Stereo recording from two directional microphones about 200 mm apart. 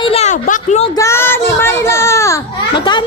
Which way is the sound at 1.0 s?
10° left (ahead or behind).